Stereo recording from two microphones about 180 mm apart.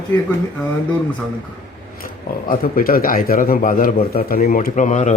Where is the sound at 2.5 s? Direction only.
55° left (ahead or behind).